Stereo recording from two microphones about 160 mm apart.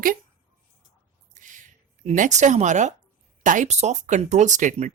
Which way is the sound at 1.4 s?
55° right (ahead or behind).